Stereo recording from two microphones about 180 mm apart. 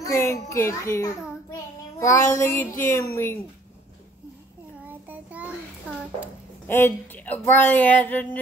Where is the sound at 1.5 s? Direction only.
15° left (ahead or behind).